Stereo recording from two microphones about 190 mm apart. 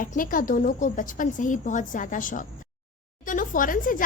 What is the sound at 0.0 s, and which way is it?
A woman's voice, 45° left (ahead or behind).